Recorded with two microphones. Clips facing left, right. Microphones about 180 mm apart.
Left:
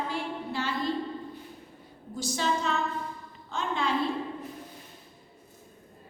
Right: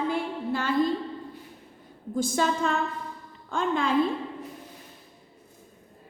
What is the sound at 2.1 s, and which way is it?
Speech, 50° right (ahead or behind).